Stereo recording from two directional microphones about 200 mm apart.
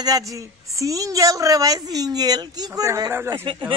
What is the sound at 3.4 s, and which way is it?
Speech, 25° right (ahead or behind).